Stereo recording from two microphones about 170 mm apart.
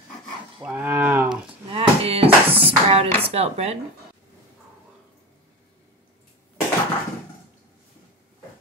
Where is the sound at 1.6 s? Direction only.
35° right (ahead or behind).